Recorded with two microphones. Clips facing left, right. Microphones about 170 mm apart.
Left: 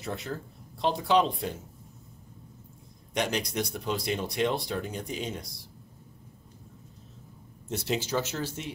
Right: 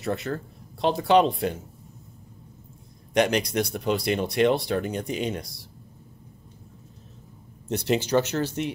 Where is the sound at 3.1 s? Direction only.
75° right (ahead or behind).